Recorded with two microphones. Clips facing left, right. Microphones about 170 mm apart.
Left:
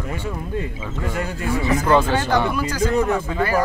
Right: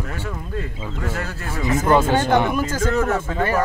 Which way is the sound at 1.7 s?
20° right (ahead or behind).